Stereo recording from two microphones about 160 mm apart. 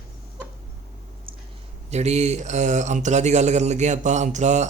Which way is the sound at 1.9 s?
45° right (ahead or behind).